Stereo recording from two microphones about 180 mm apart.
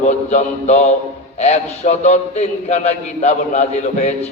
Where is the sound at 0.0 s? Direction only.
40° left (ahead or behind).